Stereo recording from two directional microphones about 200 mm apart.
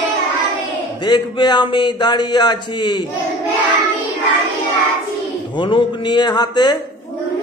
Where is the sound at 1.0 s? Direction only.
20° left (ahead or behind).